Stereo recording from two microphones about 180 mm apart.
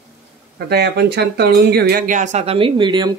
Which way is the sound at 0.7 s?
65° right (ahead or behind).